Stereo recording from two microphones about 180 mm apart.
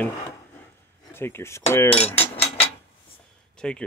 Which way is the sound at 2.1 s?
35° left (ahead or behind).